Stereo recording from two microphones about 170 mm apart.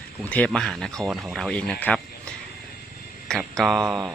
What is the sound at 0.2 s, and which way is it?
Speech, 5° left (ahead or behind).